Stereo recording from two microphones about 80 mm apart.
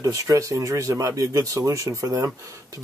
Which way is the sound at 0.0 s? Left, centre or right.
Right.